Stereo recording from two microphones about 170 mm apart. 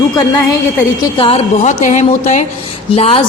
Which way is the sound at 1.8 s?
45° left (ahead or behind).